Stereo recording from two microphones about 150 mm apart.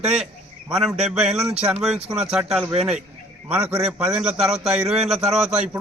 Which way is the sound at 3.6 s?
45° right (ahead or behind).